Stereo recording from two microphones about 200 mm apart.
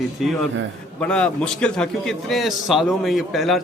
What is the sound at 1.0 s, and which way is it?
Speech, 5° left (ahead or behind).